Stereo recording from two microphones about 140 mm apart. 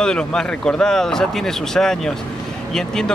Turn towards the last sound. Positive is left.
turn(degrees=5)  # may be behind; listen again after turning